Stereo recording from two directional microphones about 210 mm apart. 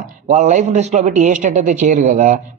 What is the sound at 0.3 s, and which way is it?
A man's voice, 35° right (ahead or behind).